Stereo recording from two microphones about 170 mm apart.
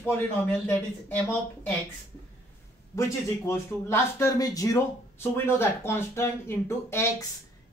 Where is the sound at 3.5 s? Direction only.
15° left (ahead or behind).